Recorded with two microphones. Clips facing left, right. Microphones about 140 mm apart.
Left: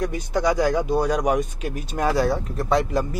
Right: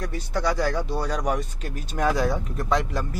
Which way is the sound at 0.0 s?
15° left (ahead or behind).